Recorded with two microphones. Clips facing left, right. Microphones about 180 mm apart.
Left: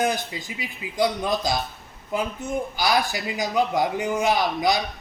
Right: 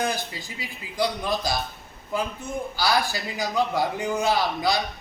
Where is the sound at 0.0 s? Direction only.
20° left (ahead or behind).